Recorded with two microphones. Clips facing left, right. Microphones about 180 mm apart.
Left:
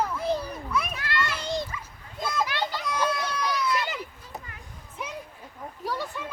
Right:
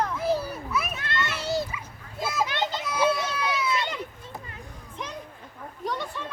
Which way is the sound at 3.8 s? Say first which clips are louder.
Right 1 dB; 5° left (ahead or behind).